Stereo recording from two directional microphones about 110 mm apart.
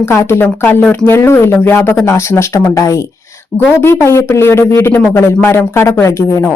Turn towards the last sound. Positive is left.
turn(degrees=25)  # may be behind; listen again after turning